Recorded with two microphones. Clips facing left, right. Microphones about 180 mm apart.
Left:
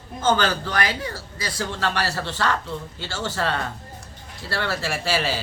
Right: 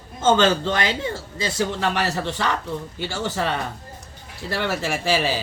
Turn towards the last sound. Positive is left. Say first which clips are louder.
# right 2 dB
turn(degrees=-15)  # may be behind; listen again after turning